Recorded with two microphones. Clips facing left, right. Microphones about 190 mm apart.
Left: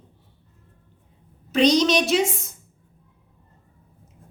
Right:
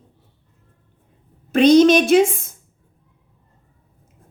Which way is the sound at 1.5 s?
55° right (ahead or behind).